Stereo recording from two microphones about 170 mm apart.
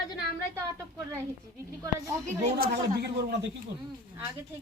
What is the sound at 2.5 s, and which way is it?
A man's voice, 60° right (ahead or behind).